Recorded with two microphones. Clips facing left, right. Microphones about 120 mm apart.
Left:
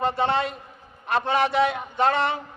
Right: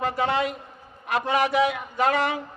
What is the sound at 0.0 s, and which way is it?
A man's voice, 30° left (ahead or behind).